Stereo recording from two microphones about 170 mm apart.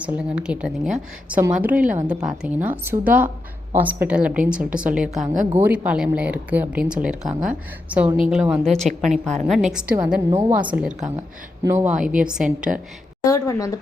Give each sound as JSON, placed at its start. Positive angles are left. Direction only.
{"t": 0.0, "sound": "a woman's voice", "side_deg": -5}
{"t": 5.2, "sound": "a woman's voice", "side_deg": -50}
{"t": 5.5, "sound": "a woman's voice", "side_deg": -10}
{"t": 9.7, "sound": "a woman's voice", "side_deg": -10}
{"t": 10.7, "sound": "a woman's voice", "side_deg": -5}
{"t": 13.2, "sound": "a woman's voice", "side_deg": 20}